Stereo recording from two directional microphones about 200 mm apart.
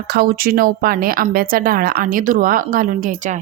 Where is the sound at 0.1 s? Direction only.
50° right (ahead or behind).